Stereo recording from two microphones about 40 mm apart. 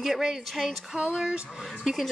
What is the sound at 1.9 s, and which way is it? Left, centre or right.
Speech, centre.